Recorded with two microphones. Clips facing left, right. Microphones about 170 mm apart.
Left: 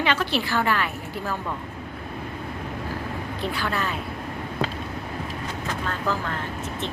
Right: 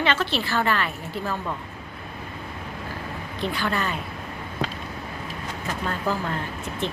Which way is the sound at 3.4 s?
5° left (ahead or behind).